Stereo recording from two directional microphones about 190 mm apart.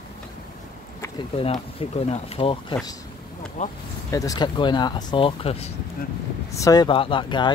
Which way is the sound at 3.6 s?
40° left (ahead or behind).